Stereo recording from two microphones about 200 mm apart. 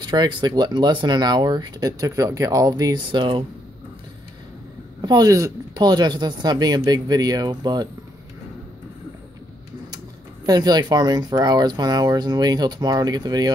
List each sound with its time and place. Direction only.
0.0 s speech: 20° right (ahead or behind)
5.0 s speech: 20° right (ahead or behind)
10.4 s speech: 20° right (ahead or behind)